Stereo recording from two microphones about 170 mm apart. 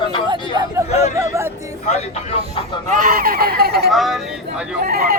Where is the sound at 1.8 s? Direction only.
40° left (ahead or behind).